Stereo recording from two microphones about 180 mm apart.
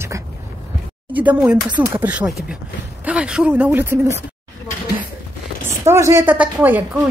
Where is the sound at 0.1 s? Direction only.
15° right (ahead or behind).